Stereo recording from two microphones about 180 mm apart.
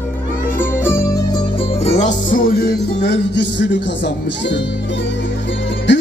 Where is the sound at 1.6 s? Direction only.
40° left (ahead or behind); by 4.6 s 75° left (ahead or behind).